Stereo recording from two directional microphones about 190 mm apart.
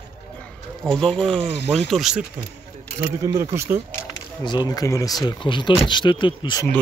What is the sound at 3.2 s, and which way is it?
Speech, 15° right (ahead or behind).